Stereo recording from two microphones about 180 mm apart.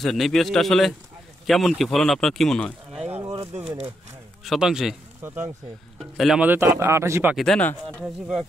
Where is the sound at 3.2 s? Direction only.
20° right (ahead or behind).